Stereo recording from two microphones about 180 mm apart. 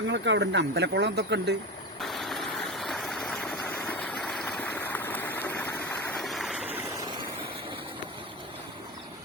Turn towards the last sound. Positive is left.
turn(degrees=-30)  # may be behind; listen again after turning